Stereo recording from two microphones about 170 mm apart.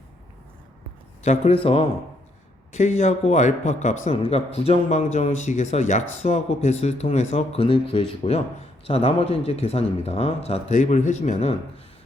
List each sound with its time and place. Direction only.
1.2 s speech: 40° left (ahead or behind)